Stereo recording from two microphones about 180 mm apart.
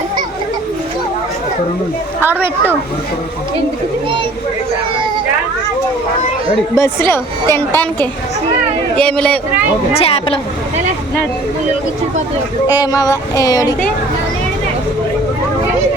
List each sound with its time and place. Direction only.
2.2 s a child's voice: 10° right (ahead or behind)
6.7 s a woman's voice: 15° left (ahead or behind)
9.9 s speech: 35° left (ahead or behind)
12.8 s a sound: 20° left (ahead or behind)